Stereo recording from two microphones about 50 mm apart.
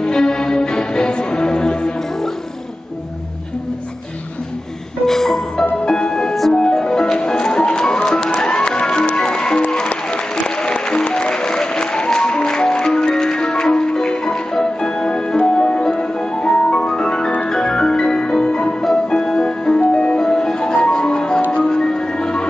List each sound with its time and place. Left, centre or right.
0.0 s music: centre
5.0 s music: centre